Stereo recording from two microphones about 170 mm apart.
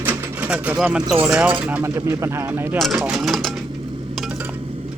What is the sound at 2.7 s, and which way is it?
Speech, centre (ahead or behind).